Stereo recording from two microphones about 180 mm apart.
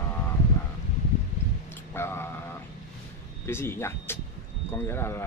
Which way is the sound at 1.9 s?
15° left (ahead or behind).